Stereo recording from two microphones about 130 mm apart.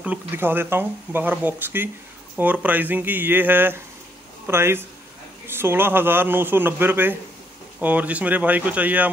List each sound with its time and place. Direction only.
0.0 s speech: 15° right (ahead or behind)